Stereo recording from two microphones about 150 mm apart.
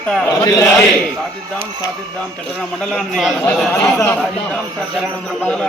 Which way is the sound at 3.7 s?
15° left (ahead or behind).